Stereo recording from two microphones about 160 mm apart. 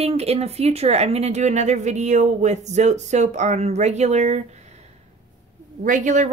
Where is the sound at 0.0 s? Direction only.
40° right (ahead or behind).